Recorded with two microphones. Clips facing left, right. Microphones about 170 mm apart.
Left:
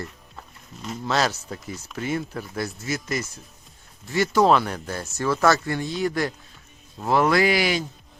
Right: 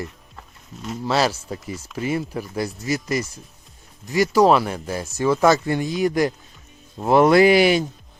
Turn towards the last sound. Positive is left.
turn(degrees=-20)  # may be behind; listen again after turning